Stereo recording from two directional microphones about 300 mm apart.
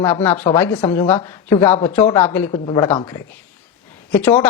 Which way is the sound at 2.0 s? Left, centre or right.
Centre.